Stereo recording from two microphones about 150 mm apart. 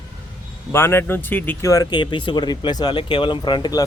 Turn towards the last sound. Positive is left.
turn(degrees=30)  # may be behind; listen again after turning